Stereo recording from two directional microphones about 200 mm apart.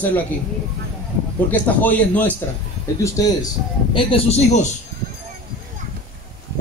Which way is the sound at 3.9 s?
30° left (ahead or behind).